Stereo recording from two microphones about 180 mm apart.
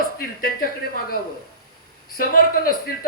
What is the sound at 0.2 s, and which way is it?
Speech, 55° left (ahead or behind).